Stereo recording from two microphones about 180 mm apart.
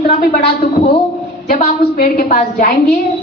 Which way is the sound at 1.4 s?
50° left (ahead or behind).